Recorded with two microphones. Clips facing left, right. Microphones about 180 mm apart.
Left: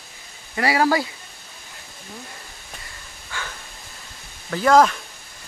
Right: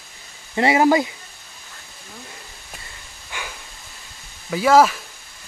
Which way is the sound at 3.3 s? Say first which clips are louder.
Even; 15° right (ahead or behind).